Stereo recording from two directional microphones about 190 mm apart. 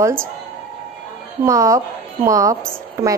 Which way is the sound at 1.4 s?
15° right (ahead or behind).